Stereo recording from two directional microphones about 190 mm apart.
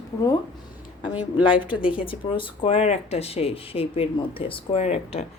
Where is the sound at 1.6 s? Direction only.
25° left (ahead or behind).